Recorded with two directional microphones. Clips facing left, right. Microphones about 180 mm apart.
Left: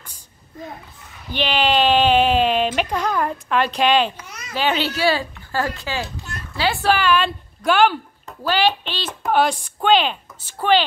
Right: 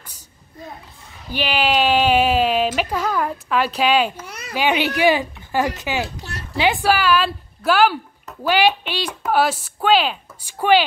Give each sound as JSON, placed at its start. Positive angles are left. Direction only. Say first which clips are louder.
{"t": 1.3, "sound": "speech", "louder": "left 1 dB", "side_deg": -10}